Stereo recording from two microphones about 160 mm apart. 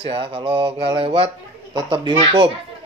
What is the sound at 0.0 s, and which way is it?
Speech, 35° right (ahead or behind).